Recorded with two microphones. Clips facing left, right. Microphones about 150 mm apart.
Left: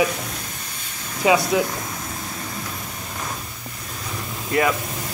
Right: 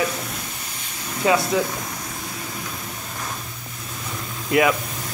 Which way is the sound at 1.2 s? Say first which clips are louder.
Left 2 dB; 15° left (ahead or behind).